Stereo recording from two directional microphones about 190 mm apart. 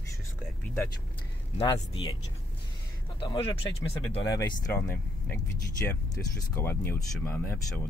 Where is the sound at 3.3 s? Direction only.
20° left (ahead or behind).